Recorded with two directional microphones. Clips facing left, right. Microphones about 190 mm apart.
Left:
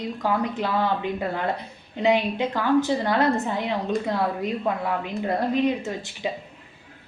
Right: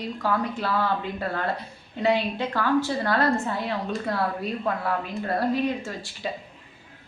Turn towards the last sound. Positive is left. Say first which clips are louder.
# left 4 dB
turn(degrees=20)  # may be behind; listen again after turning